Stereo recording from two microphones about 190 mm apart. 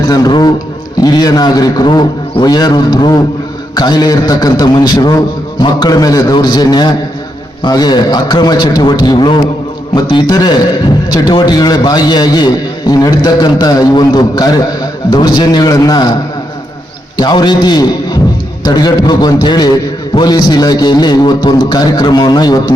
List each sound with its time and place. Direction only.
0.1 s a sound: 20° left (ahead or behind)
1.0 s a man's voice: 20° left (ahead or behind)
17.2 s a man's voice: 20° left (ahead or behind)